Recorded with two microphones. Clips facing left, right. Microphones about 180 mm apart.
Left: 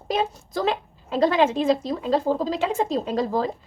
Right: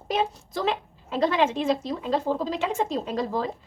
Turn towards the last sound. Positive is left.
turn(degrees=40)  # may be behind; listen again after turning